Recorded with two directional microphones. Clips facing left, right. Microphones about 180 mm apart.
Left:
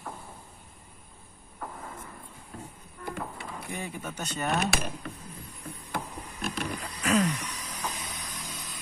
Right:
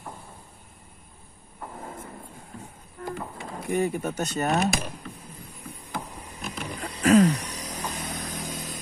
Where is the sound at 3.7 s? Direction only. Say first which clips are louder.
Right 13 dB; 45° right (ahead or behind).